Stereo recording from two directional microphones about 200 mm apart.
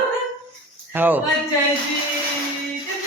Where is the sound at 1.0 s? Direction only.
10° right (ahead or behind).